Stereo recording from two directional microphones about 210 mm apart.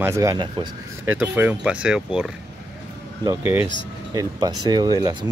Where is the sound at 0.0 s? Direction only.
15° right (ahead or behind).